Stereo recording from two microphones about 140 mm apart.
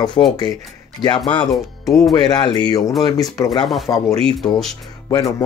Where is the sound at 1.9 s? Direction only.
25° left (ahead or behind).